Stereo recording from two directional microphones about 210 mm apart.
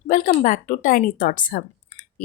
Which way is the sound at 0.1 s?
35° left (ahead or behind).